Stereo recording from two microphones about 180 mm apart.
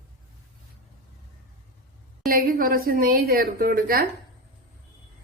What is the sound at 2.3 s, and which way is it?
A woman's voice, 50° right (ahead or behind).